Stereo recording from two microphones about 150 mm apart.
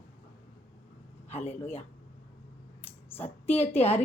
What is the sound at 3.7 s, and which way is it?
Speech, 40° left (ahead or behind).